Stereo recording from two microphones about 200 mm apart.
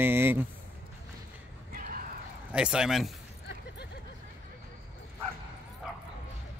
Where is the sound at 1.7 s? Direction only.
45° right (ahead or behind).